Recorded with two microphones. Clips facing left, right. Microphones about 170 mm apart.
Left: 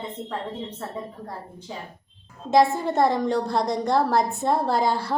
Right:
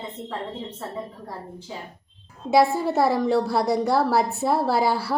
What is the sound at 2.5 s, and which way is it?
A woman's voice, 10° right (ahead or behind).